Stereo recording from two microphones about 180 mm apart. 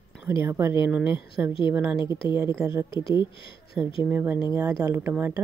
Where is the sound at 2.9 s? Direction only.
30° left (ahead or behind).